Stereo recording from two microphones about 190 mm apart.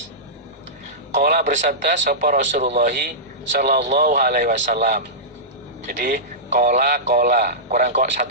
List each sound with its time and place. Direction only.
1.1 s a man's voice: 50° right (ahead or behind)